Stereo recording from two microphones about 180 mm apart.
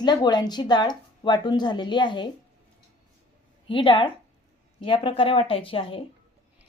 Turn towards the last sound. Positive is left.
turn(degrees=30)  # may be behind; listen again after turning